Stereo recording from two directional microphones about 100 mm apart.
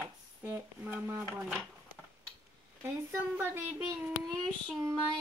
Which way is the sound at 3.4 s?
20° right (ahead or behind).